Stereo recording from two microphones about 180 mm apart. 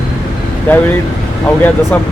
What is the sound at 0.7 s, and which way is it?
Speech, 10° left (ahead or behind).